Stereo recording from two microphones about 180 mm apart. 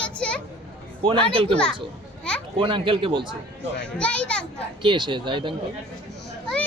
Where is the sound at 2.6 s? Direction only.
30° right (ahead or behind).